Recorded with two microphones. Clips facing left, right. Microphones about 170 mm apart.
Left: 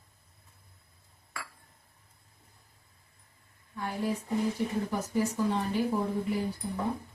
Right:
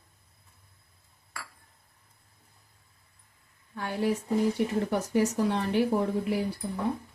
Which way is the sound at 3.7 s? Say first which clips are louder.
Right 4 dB; 75° right (ahead or behind).